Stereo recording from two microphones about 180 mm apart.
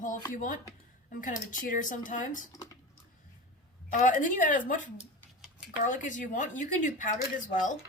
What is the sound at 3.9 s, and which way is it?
Speech, 45° left (ahead or behind).